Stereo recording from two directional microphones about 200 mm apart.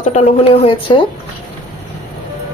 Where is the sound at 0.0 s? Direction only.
35° left (ahead or behind).